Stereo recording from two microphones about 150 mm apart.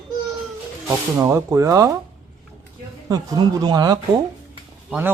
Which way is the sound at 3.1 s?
25° right (ahead or behind).